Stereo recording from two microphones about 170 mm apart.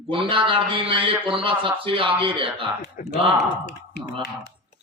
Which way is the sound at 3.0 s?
50° left (ahead or behind).